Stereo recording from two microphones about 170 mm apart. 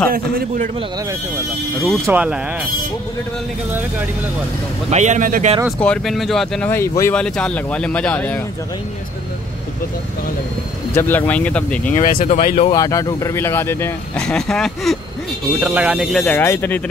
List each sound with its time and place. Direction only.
0.1 s a man's voice: 60° right (ahead or behind)
2.0 s speech: 10° right (ahead or behind)
4.9 s speech: 45° right (ahead or behind)
5.7 s speech: 5° left (ahead or behind)
6.7 s speech: 15° left (ahead or behind)
11.0 s speech: 10° left (ahead or behind)
11.9 s speech: 55° left (ahead or behind)
12.7 s speech: 20° left (ahead or behind); by 16.3 s centre (ahead or behind)
16.3 s speech: 10° left (ahead or behind)